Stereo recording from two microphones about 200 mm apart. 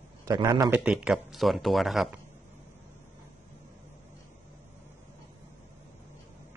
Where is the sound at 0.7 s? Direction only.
5° right (ahead or behind).